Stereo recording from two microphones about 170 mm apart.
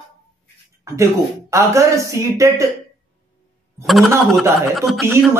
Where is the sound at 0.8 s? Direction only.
15° right (ahead or behind).